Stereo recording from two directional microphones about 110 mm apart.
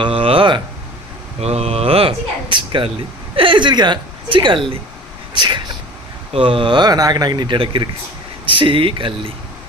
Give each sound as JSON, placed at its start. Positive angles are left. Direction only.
{"t": 0.0, "sound": "speech", "side_deg": -55}
{"t": 1.4, "sound": "speech", "side_deg": -70}